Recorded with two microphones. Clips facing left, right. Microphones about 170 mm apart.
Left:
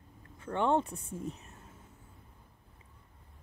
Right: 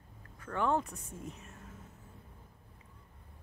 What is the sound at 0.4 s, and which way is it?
Speech, 25° left (ahead or behind).